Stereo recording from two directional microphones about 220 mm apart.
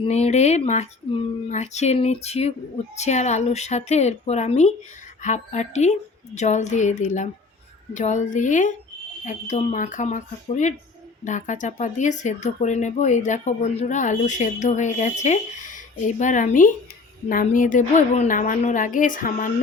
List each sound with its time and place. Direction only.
0.0 s speech: 30° left (ahead or behind)